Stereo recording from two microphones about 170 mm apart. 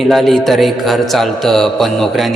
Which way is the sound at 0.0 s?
Centre (ahead or behind).